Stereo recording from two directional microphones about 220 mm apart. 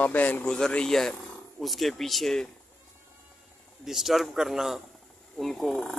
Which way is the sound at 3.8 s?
Centre (ahead or behind).